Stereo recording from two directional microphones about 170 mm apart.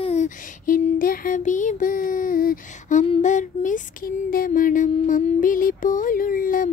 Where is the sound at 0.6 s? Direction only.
55° left (ahead or behind).